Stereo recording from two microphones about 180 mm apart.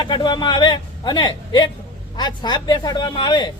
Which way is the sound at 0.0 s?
25° left (ahead or behind).